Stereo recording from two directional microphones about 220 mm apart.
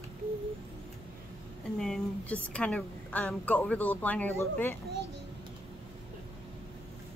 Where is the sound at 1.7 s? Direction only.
Centre (ahead or behind).